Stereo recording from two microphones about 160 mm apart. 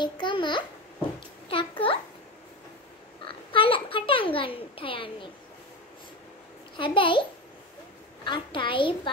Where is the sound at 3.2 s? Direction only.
35° left (ahead or behind).